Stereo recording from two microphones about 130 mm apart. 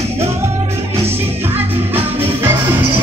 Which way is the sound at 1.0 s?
15° right (ahead or behind).